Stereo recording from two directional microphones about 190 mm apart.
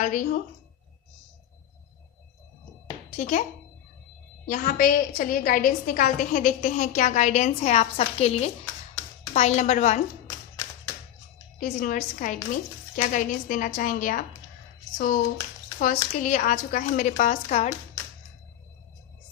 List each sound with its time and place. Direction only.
0.0 s a woman's voice: 45° left (ahead or behind)
3.1 s speech: 40° left (ahead or behind)
4.4 s a woman's voice: 45° left (ahead or behind)
10.2 s clapping: 20° left (ahead or behind)
11.5 s a woman's voice: 45° left (ahead or behind)
16.2 s a woman's voice: 45° left (ahead or behind)